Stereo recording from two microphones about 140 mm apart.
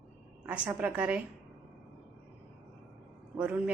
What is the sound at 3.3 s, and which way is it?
Speech, 10° right (ahead or behind).